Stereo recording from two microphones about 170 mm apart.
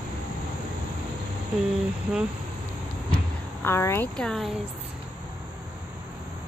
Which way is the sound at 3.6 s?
15° left (ahead or behind).